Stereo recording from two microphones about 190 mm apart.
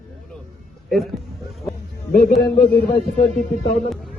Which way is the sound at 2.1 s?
50° left (ahead or behind).